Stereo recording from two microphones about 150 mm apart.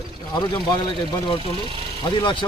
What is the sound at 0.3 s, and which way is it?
A man's voice, 30° left (ahead or behind).